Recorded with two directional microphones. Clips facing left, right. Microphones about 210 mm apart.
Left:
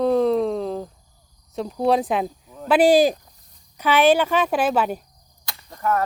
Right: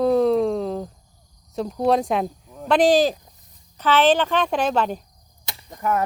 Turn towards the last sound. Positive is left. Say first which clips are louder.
# even
turn(degrees=-15)  # may be behind; listen again after turning